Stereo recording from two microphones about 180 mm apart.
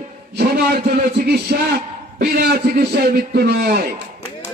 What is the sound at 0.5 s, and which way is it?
A man's voice, 60° right (ahead or behind).